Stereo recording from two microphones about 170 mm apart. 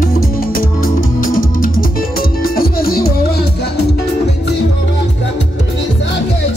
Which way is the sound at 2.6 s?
60° left (ahead or behind).